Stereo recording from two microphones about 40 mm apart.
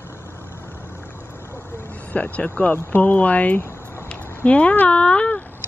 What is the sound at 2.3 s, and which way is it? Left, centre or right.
Speech, left.